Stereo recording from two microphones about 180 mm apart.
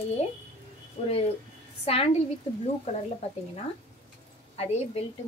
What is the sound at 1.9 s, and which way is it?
Speech, 35° left (ahead or behind).